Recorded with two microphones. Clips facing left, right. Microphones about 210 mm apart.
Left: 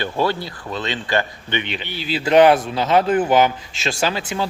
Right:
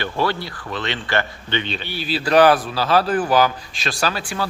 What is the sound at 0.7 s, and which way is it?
Speech, 20° left (ahead or behind).